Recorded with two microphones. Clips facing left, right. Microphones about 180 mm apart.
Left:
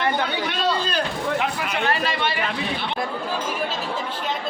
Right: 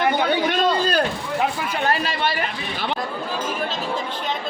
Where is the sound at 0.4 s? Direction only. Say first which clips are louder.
Right 4 dB; 50° right (ahead or behind).